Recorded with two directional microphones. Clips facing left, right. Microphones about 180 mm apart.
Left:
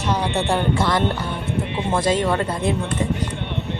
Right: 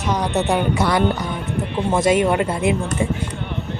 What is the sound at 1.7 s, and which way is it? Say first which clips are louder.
Speech: right 4 dB; centre (ahead or behind).